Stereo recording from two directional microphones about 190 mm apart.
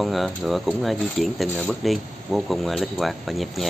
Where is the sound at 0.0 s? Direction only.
Centre (ahead or behind).